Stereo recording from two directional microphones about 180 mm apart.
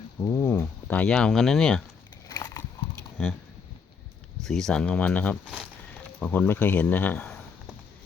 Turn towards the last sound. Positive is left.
turn(degrees=5)  # may be behind; listen again after turning